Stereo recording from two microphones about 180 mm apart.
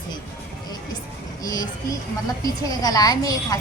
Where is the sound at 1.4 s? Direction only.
20° left (ahead or behind).